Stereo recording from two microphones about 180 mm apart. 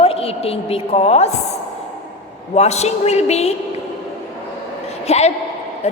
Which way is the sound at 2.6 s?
35° left (ahead or behind).